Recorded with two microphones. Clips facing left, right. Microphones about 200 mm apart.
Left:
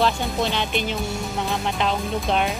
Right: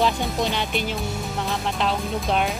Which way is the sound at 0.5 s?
10° right (ahead or behind).